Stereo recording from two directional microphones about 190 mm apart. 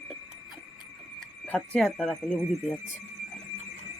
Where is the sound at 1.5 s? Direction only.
5° left (ahead or behind).